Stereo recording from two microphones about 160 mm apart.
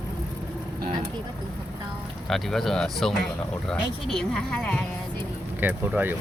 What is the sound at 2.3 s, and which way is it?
Speech, centre (ahead or behind).